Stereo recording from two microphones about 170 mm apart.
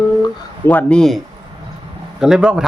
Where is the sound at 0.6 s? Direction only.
10° left (ahead or behind).